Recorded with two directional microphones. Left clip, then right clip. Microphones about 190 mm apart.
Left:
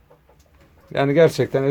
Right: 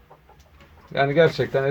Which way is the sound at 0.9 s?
45° left (ahead or behind).